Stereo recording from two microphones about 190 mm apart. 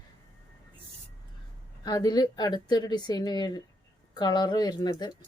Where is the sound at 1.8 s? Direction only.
20° left (ahead or behind).